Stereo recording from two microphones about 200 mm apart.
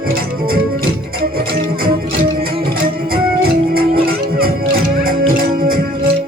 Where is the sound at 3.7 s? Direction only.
50° right (ahead or behind).